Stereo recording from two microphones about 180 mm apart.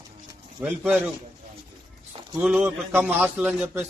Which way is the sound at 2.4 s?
Centre (ahead or behind).